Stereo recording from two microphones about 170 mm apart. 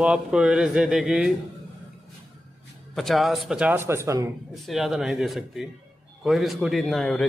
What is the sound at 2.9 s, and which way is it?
A man's voice, centre (ahead or behind).